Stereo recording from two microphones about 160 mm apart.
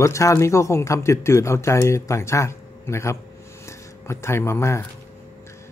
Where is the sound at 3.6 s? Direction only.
15° left (ahead or behind).